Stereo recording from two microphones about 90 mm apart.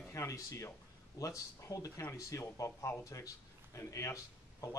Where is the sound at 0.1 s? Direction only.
35° left (ahead or behind).